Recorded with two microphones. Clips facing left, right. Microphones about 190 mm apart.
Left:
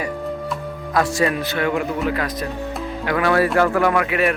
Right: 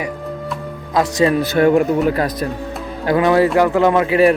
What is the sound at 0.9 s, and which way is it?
Speech, 25° right (ahead or behind).